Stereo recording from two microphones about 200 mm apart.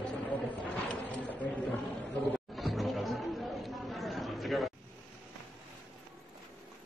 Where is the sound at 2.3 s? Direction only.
Centre (ahead or behind).